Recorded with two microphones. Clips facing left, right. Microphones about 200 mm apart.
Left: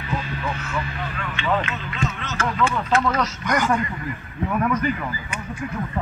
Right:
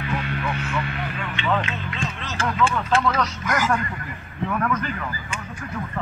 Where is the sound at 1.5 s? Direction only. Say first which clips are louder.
Left 1 dB; 5° left (ahead or behind).